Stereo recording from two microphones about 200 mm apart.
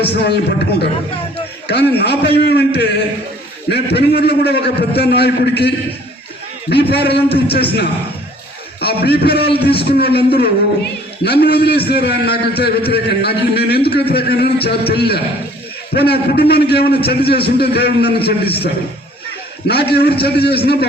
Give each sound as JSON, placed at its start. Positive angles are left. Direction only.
{"t": 0.0, "sound": "a man's voice", "side_deg": 55}
{"t": 1.6, "sound": "a man's voice", "side_deg": 55}
{"t": 8.8, "sound": "a man's voice", "side_deg": 50}